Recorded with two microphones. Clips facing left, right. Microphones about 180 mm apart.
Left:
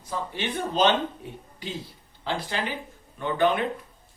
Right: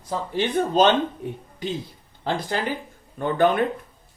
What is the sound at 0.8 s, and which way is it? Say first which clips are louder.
Speech: right 3 dB; 50° right (ahead or behind).